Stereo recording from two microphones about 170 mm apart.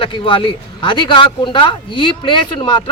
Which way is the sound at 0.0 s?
30° left (ahead or behind).